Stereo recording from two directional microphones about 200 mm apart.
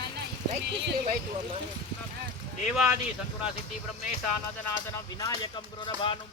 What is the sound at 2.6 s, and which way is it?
Speech, centre (ahead or behind).